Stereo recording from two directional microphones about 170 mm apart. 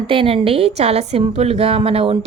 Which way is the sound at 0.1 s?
30° right (ahead or behind).